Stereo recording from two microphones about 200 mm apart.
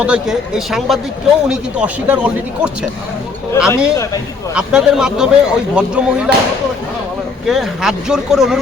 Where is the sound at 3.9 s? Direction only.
15° left (ahead or behind).